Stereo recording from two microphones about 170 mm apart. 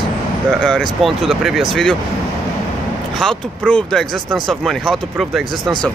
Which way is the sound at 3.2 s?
5° left (ahead or behind).